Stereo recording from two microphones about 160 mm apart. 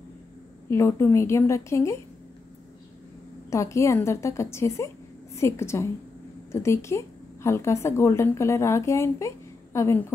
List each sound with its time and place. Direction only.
0.7 s a woman's voice: 15° left (ahead or behind)
3.4 s a woman's voice: 20° left (ahead or behind)